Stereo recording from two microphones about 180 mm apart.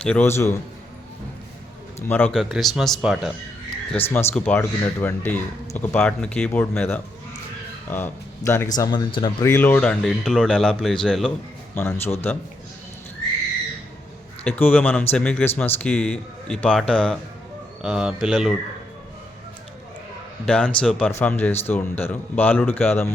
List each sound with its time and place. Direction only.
0.0 s speech: 10° left (ahead or behind)
2.0 s speech: 10° left (ahead or behind)
2.3 s speech: centre (ahead or behind)
4.0 s speech: 15° left (ahead or behind)
14.4 s speech: 10° left (ahead or behind)
20.4 s speech: 5° left (ahead or behind)